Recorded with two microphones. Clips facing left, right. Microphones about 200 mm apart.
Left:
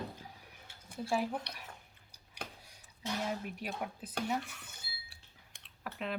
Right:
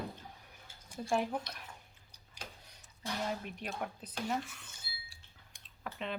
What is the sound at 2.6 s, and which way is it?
Speech, 5° left (ahead or behind).